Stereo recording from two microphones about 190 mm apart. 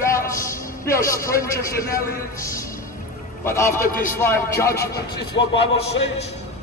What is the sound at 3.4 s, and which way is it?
Speech, 15° left (ahead or behind).